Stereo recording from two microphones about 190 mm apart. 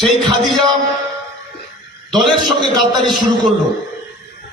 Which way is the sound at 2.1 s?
Centre (ahead or behind).